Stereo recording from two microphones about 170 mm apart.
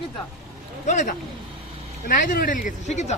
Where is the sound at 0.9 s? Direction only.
45° left (ahead or behind).